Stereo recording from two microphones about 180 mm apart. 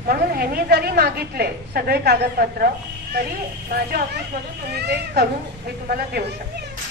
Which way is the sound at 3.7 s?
60° right (ahead or behind).